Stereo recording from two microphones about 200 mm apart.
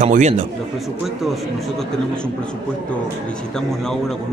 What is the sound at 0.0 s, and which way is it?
Speech, 35° right (ahead or behind).